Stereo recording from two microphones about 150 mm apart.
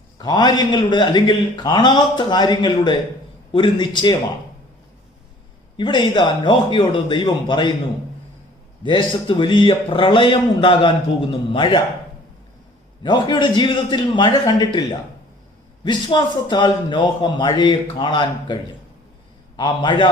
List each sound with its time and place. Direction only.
0.2 s a man's voice: 25° left (ahead or behind)
5.7 s speech: 30° left (ahead or behind)
8.8 s speech: 30° left (ahead or behind)
13.0 s a man's voice: 30° left (ahead or behind)